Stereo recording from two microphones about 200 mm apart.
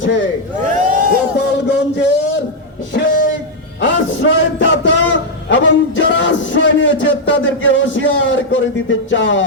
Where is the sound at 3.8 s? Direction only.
70° left (ahead or behind).